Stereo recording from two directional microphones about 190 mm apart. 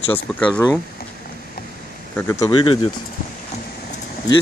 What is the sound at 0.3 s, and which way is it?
Speech, centre (ahead or behind).